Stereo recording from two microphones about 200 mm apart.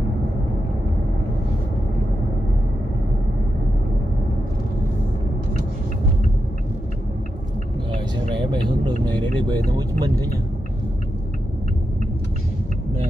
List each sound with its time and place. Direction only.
9.5 s vehicle: 20° right (ahead or behind)